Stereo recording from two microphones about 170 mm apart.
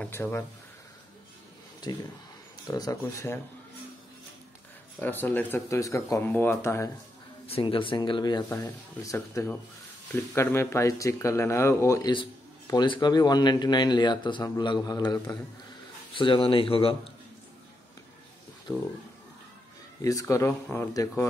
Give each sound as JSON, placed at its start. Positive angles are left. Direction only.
{"t": 0.0, "sound": "speech", "side_deg": 15}
{"t": 1.8, "sound": "speech", "side_deg": 25}
{"t": 5.0, "sound": "speech", "side_deg": 10}
{"t": 7.4, "sound": "speech", "side_deg": 30}
{"t": 18.7, "sound": "speech", "side_deg": 10}
{"t": 20.0, "sound": "speech", "side_deg": 20}